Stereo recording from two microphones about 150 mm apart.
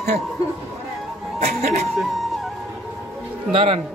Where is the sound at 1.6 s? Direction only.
45° right (ahead or behind).